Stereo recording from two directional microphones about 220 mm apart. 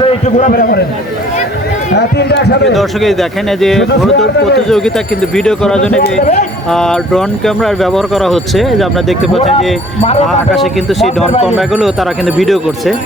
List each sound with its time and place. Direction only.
0.0 s a man's voice: 30° left (ahead or behind)
2.0 s a man's voice: 50° left (ahead or behind)
2.7 s speech: centre (ahead or behind)
9.4 s speech: 30° left (ahead or behind)
10.2 s speech: centre (ahead or behind)